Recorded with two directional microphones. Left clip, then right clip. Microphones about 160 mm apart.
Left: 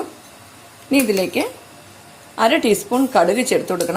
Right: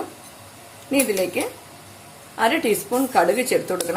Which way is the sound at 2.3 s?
35° left (ahead or behind).